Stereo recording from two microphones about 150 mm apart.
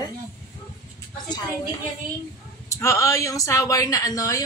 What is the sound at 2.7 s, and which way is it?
Speech, 20° left (ahead or behind).